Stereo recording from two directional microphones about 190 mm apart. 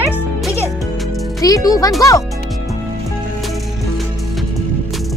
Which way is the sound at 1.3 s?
20° left (ahead or behind).